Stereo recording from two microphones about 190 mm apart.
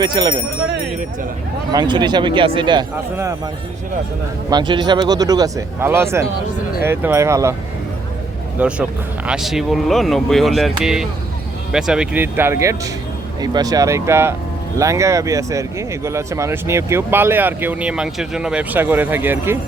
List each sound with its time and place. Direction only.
0.0 s speech: 25° right (ahead or behind)
1.7 s speech: 25° right (ahead or behind)
8.5 s speech: 5° right (ahead or behind)